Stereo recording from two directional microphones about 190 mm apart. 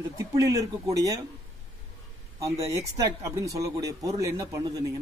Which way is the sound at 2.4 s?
15° right (ahead or behind).